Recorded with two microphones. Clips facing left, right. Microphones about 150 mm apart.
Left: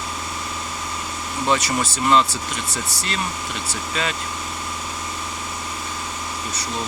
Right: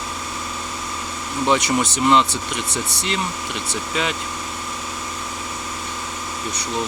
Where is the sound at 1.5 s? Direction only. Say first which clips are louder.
Right 2 dB; 20° right (ahead or behind).